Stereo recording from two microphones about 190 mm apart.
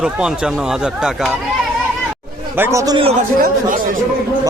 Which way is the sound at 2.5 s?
15° right (ahead or behind).